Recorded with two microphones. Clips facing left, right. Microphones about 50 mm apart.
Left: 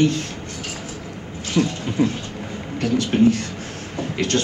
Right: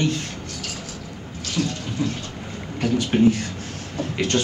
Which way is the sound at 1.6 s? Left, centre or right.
Left.